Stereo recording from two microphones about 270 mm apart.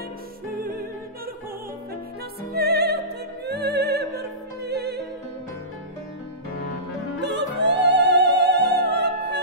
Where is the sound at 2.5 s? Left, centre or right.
Right.